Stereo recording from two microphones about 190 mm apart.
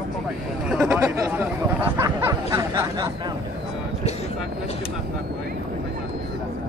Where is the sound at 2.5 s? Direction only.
15° right (ahead or behind).